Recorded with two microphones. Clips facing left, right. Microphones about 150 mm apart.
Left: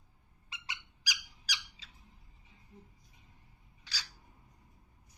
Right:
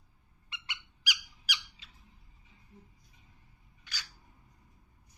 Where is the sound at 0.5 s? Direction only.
35° left (ahead or behind).